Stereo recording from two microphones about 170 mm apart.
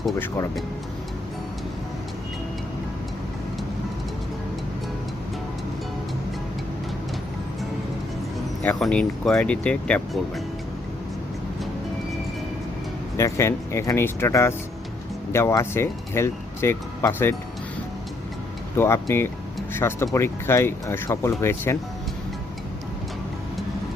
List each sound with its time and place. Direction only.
8.6 s speech: 5° left (ahead or behind)
13.1 s speech: 15° left (ahead or behind)
18.8 s speech: 15° left (ahead or behind)